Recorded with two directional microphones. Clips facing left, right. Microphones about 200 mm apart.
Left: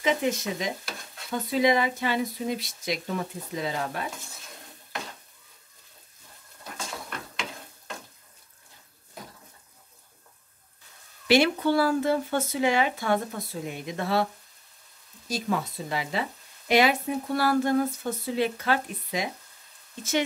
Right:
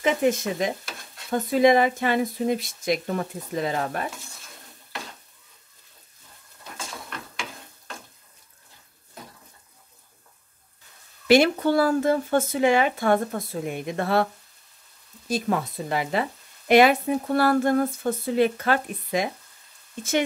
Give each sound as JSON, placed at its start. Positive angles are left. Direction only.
{"t": 0.0, "sound": "speech", "side_deg": -50}
{"t": 11.2, "sound": "speech", "side_deg": -45}
{"t": 15.2, "sound": "speech", "side_deg": -55}